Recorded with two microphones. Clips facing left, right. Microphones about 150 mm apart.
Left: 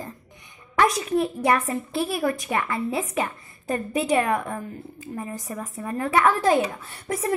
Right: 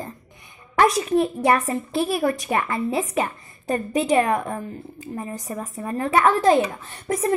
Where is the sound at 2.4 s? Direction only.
30° right (ahead or behind).